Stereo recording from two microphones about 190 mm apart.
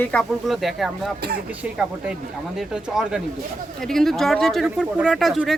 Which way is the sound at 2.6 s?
Centre (ahead or behind).